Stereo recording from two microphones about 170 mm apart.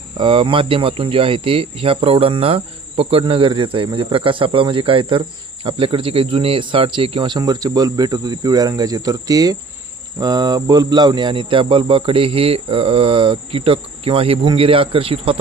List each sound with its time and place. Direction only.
0.2 s speech: 30° right (ahead or behind)